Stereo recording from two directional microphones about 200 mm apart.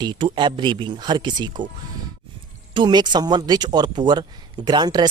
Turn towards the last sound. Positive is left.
turn(degrees=-20)  # may be behind; listen again after turning